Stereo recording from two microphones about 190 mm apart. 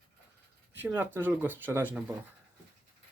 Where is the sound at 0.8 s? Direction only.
10° right (ahead or behind).